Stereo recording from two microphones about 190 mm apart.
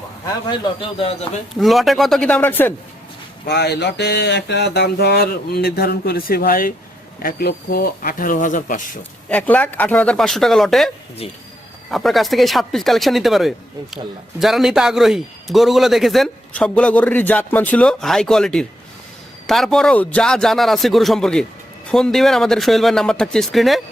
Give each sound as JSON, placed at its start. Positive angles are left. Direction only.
{"t": 1.5, "sound": "a man's voice", "side_deg": 0}
{"t": 3.4, "sound": "speech", "side_deg": 60}
{"t": 9.3, "sound": "a man's voice", "side_deg": 10}